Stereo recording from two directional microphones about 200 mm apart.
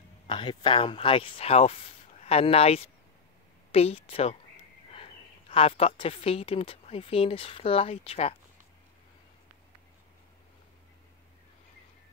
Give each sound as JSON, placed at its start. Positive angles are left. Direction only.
{"t": 0.3, "sound": "a woman's voice", "side_deg": 25}